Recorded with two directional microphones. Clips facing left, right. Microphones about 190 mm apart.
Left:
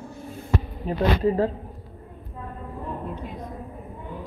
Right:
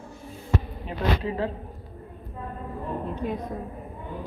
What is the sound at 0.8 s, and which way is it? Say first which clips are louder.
Speech: left 8 dB; 40° left (ahead or behind).